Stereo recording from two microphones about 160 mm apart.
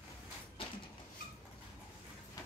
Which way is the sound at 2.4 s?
25° left (ahead or behind).